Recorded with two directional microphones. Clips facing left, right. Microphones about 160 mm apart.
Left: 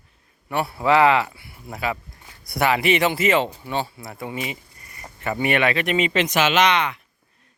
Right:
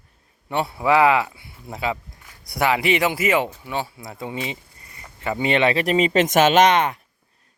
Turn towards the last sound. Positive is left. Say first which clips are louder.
# right 4 dB
turn(degrees=-45)  # may be behind; listen again after turning